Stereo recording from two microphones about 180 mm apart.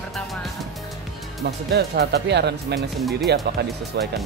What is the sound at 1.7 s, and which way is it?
Speech, 65° right (ahead or behind).